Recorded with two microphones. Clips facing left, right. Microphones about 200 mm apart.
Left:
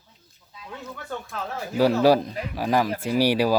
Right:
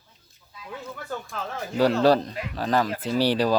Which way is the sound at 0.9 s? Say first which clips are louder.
Left 1 dB; centre (ahead or behind).